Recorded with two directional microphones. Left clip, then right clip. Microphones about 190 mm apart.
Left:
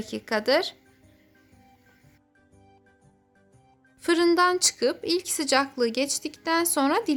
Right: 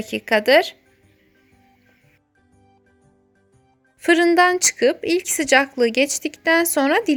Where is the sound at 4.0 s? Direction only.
15° right (ahead or behind).